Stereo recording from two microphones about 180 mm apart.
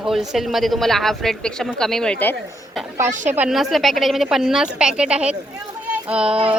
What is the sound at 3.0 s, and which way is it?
Speech, 45° right (ahead or behind).